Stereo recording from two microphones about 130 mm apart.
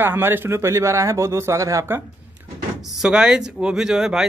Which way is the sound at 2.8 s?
5° right (ahead or behind).